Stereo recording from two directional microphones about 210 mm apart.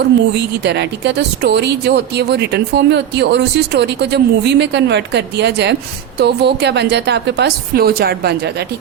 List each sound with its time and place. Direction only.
0.3 s speech: 55° right (ahead or behind)